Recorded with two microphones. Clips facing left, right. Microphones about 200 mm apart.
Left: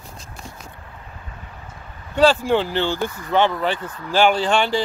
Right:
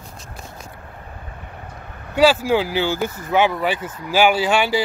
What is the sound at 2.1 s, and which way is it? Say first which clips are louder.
Speech: right 1 dB; 5° right (ahead or behind).